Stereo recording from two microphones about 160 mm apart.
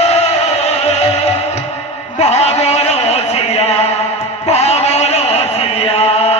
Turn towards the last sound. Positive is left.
turn(degrees=40)  # may be behind; listen again after turning